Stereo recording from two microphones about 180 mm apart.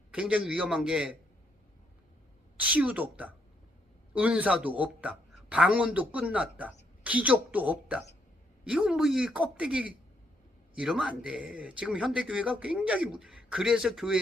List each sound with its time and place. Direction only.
0.1 s speech: 5° right (ahead or behind)
2.6 s speech: 10° right (ahead or behind)